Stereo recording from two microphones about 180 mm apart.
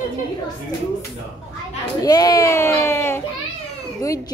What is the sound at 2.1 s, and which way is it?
Speech, 20° left (ahead or behind).